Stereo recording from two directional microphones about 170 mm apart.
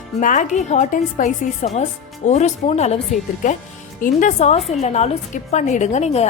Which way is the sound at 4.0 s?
45° left (ahead or behind).